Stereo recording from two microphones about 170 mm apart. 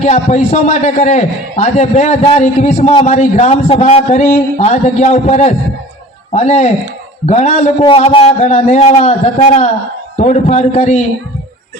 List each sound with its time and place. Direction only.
0.0 s a man's voice: 45° left (ahead or behind)